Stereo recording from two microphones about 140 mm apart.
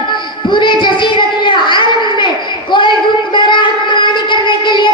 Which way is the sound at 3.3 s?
35° left (ahead or behind).